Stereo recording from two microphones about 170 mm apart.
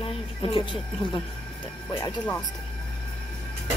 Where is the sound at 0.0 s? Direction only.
30° left (ahead or behind).